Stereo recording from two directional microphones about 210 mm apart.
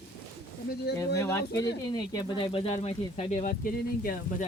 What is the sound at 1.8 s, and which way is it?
Speech, 20° left (ahead or behind).